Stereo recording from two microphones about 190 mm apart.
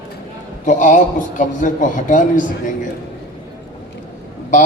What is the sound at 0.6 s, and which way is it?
A man's voice, 40° left (ahead or behind).